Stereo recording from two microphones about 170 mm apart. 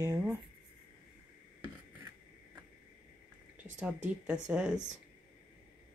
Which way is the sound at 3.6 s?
5° right (ahead or behind).